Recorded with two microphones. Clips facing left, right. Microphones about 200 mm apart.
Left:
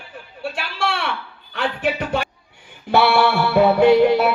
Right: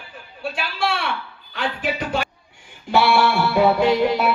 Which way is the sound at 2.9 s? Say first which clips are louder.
Left 1 dB; 60° left (ahead or behind).